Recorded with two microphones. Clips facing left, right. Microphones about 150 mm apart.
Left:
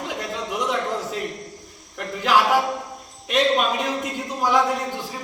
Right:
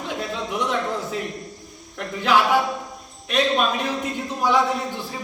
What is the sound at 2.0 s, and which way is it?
Speech, 10° left (ahead or behind).